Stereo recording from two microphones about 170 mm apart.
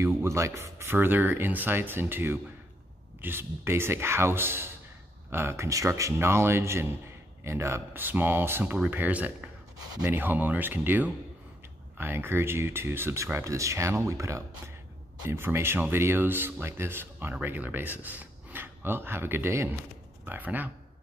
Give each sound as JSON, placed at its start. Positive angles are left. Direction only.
{"t": 0.0, "sound": "speech", "side_deg": -15}